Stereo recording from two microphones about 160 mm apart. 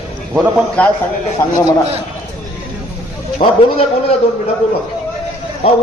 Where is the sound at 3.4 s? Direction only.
40° left (ahead or behind).